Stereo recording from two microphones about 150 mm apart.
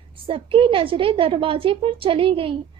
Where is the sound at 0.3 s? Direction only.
35° right (ahead or behind).